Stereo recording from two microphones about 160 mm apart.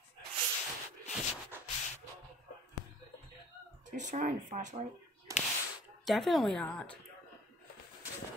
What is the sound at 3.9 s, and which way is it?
Speech, 50° right (ahead or behind).